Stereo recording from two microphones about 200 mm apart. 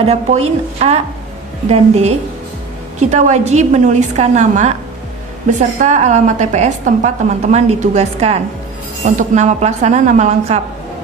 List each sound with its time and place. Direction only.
0.0 s a woman's voice: 30° right (ahead or behind)